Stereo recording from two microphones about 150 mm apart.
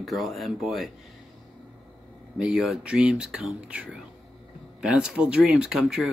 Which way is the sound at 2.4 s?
Centre (ahead or behind).